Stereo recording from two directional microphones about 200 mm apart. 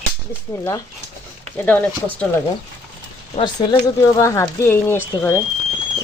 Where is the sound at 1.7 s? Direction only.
5° left (ahead or behind).